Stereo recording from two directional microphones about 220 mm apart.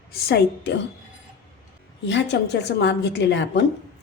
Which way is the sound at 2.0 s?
55° left (ahead or behind).